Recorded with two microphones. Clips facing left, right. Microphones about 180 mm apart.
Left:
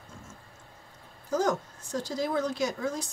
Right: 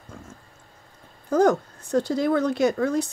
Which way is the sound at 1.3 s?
60° right (ahead or behind).